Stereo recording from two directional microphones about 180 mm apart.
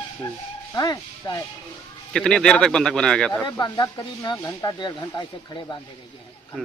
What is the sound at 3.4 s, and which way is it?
Speech, 20° left (ahead or behind).